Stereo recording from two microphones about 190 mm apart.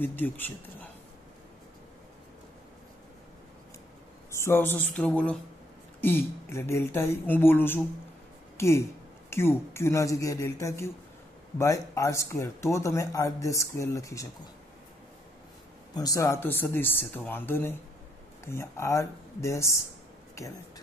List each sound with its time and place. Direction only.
0.0 s speech: 10° left (ahead or behind)
4.3 s speech: 15° left (ahead or behind)
15.9 s speech: 20° left (ahead or behind)